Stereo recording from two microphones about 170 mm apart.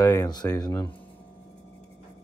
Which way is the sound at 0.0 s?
20° left (ahead or behind).